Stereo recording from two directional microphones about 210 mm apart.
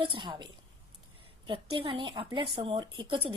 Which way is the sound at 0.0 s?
25° right (ahead or behind).